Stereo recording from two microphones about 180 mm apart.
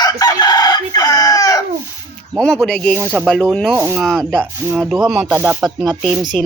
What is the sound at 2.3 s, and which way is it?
Speech, 5° left (ahead or behind).